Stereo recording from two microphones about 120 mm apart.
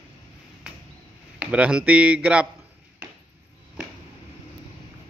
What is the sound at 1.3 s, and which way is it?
A man's voice, 10° right (ahead or behind).